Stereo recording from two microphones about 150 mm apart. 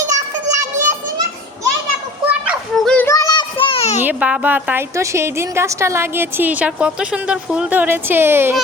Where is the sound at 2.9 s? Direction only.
15° left (ahead or behind); by 4.0 s 45° left (ahead or behind).